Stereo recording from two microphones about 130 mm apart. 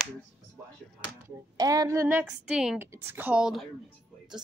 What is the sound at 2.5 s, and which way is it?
Speech, 5° right (ahead or behind).